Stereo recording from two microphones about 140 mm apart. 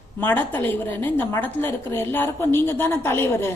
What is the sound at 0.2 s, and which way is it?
A woman's voice, 15° left (ahead or behind).